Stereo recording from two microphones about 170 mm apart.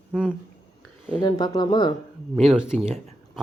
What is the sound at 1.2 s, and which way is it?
Speech, 25° left (ahead or behind).